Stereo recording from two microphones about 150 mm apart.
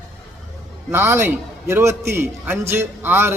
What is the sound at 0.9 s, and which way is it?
A man's voice, 15° right (ahead or behind).